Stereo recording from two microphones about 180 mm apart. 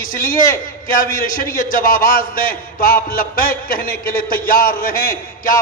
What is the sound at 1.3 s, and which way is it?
A man's voice, 50° left (ahead or behind).